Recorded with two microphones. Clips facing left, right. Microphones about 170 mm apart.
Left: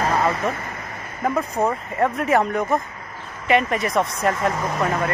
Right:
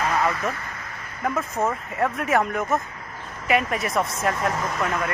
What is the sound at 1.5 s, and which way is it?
Speech, 15° left (ahead or behind).